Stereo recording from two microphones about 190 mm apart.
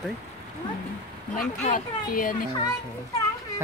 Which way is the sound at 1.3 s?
45° left (ahead or behind).